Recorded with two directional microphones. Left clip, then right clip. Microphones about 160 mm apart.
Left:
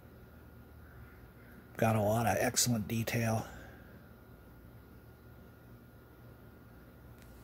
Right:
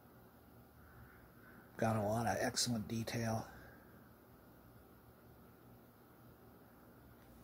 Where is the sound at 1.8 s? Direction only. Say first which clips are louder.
Left 6 dB; 30° left (ahead or behind).